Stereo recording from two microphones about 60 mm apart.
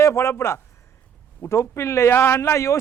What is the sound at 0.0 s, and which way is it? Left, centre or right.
A man's voice, left.